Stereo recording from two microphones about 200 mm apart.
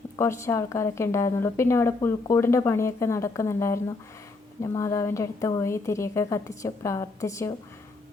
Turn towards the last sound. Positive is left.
turn(degrees=15)  # may be behind; listen again after turning